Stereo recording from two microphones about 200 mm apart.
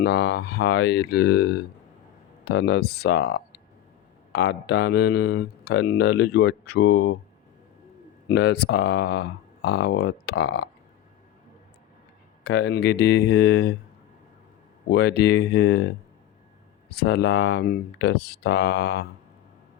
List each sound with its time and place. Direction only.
0.0 s speech: 55° left (ahead or behind)
8.3 s speech: 55° left (ahead or behind)
12.4 s speech: 55° left (ahead or behind)
14.8 s speech: 55° left (ahead or behind)
16.9 s speech: 55° left (ahead or behind)